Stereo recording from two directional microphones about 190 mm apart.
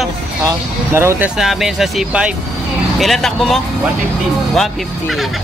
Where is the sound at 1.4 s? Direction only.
Centre (ahead or behind).